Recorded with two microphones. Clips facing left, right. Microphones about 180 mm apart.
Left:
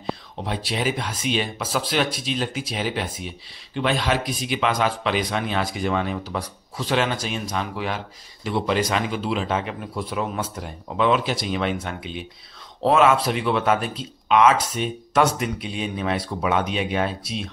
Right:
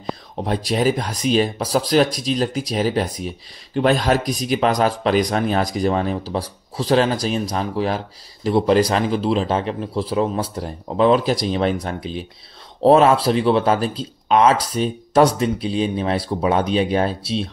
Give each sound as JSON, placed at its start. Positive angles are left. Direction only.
{"t": 0.4, "sound": "speech", "side_deg": -40}